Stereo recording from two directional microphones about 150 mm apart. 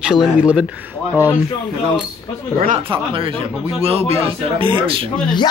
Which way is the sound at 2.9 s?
35° right (ahead or behind).